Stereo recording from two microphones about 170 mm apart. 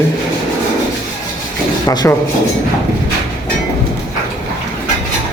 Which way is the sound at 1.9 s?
25° left (ahead or behind).